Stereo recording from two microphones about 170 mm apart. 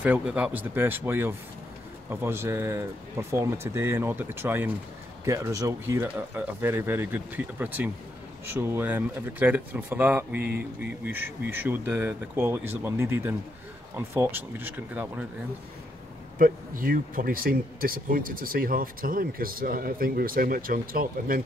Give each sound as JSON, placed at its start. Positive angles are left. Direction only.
{"t": 0.0, "sound": "speech", "side_deg": -10}
{"t": 16.3, "sound": "speech", "side_deg": -55}